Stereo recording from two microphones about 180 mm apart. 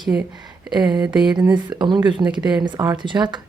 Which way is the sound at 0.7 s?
20° right (ahead or behind).